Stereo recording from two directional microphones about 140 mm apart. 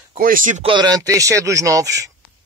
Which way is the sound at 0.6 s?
30° right (ahead or behind).